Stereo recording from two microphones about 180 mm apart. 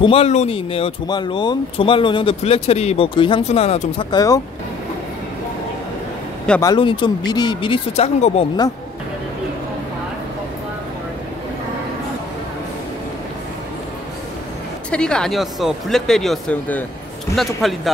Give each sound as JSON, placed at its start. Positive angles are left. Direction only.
{"t": 0.0, "sound": "speech", "side_deg": 35}
{"t": 4.1, "sound": "speech", "side_deg": 20}
{"t": 6.6, "sound": "speech", "side_deg": 25}
{"t": 14.9, "sound": "speech", "side_deg": 5}